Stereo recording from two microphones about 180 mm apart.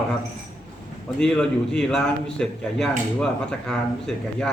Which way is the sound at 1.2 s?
5° left (ahead or behind).